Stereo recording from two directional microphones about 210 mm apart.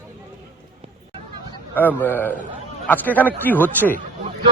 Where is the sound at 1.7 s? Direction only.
10° left (ahead or behind).